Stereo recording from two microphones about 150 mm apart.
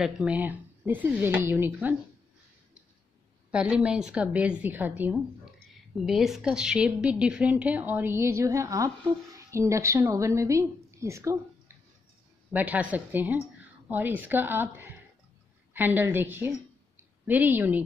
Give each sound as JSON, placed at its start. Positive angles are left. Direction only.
{"t": 0.0, "sound": "a woman's voice", "side_deg": -5}
{"t": 3.5, "sound": "a woman's voice", "side_deg": -5}